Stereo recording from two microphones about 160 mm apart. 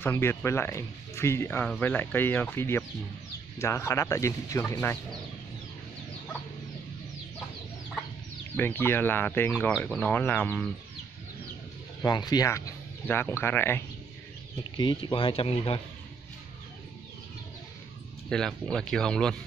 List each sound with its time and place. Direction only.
0.0 s speech: 15° left (ahead or behind)
8.5 s speech: 15° left (ahead or behind)
12.0 s speech: 25° left (ahead or behind)
14.8 s speech: 30° left (ahead or behind)
18.3 s speech: 5° left (ahead or behind)